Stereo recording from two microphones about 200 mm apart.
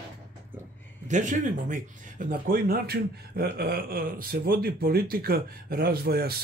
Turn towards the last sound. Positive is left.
turn(degrees=-50)  # may be behind; listen again after turning